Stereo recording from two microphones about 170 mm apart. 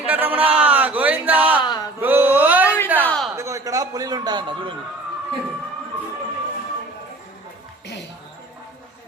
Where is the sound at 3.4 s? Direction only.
20° right (ahead or behind).